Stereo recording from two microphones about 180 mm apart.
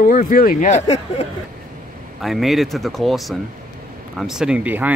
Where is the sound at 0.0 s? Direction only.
50° left (ahead or behind).